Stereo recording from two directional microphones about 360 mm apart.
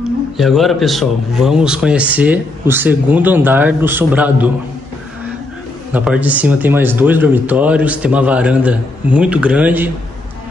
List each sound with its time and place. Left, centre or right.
0.4 s a man's voice: centre
5.9 s a man's voice: centre